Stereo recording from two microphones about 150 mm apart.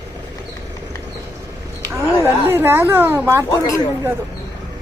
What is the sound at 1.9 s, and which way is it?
Speech, 15° right (ahead or behind).